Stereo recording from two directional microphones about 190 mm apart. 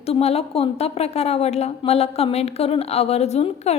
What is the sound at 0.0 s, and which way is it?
A woman's voice, 30° left (ahead or behind).